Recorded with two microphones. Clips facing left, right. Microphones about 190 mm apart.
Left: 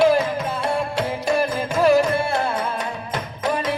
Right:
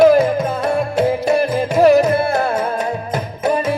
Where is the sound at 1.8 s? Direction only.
40° right (ahead or behind).